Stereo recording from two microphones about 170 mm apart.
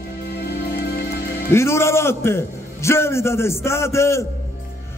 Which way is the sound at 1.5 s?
15° left (ahead or behind).